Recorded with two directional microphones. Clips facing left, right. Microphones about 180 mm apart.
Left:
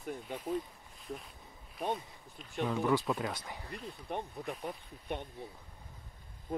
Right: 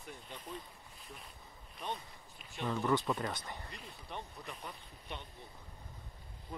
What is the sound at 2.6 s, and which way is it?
Speech, 5° left (ahead or behind).